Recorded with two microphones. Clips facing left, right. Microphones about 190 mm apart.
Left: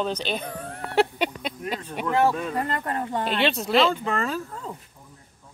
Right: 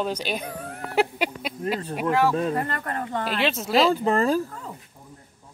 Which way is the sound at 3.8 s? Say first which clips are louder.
Right 6 dB; 35° right (ahead or behind).